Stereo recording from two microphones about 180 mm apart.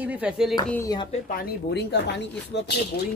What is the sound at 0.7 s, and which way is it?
Speech, 15° left (ahead or behind).